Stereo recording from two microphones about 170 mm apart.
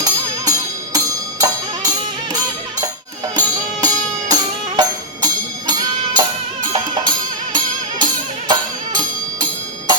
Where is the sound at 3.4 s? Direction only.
25° right (ahead or behind).